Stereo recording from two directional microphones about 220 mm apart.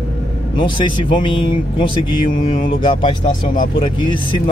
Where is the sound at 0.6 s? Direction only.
20° left (ahead or behind).